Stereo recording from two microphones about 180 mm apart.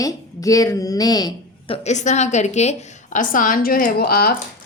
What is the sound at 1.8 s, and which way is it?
A woman's voice, 40° left (ahead or behind).